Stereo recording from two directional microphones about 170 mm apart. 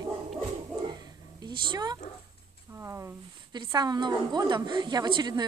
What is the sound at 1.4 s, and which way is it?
Speech, 25° right (ahead or behind).